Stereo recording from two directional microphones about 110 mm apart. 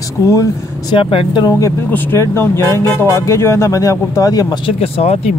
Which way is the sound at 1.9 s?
20° left (ahead or behind).